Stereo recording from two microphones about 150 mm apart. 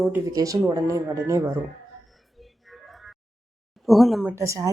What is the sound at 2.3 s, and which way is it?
Music, centre (ahead or behind).